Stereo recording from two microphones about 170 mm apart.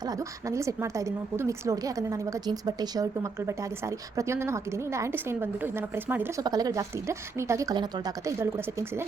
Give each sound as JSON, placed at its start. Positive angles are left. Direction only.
{"t": 0.1, "sound": "a woman's voice", "side_deg": -20}
{"t": 6.4, "sound": "speech", "side_deg": -25}